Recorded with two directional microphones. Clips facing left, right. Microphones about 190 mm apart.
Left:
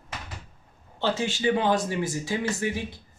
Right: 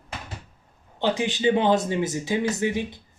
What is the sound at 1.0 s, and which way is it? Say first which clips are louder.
Speech: right 3 dB; 15° right (ahead or behind).